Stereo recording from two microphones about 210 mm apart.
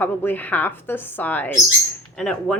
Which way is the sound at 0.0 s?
10° left (ahead or behind).